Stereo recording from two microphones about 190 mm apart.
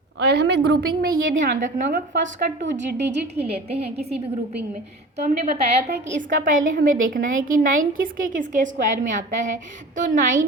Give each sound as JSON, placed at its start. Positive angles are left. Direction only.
{"t": 0.2, "sound": "a woman's voice", "side_deg": -60}
{"t": 2.2, "sound": "a woman's voice", "side_deg": -70}
{"t": 3.4, "sound": "a woman's voice", "side_deg": -30}
{"t": 5.1, "sound": "a woman's voice", "side_deg": -35}